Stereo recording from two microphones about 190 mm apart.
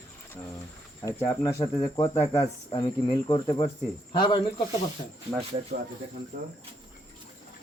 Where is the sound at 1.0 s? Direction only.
15° left (ahead or behind).